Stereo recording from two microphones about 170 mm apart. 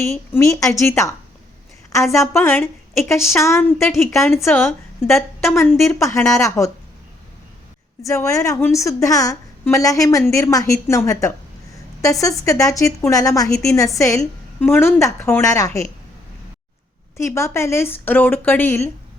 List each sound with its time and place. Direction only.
0.0 s a woman's voice: 15° left (ahead or behind)
8.0 s a woman's voice: 15° left (ahead or behind)
17.2 s a woman's voice: 15° left (ahead or behind)